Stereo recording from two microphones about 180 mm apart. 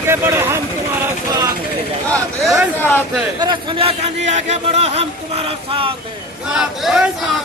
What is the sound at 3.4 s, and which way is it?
Speech, 25° right (ahead or behind).